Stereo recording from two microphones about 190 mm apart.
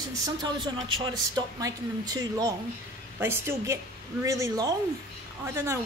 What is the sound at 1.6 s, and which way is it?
Speech, 20° right (ahead or behind).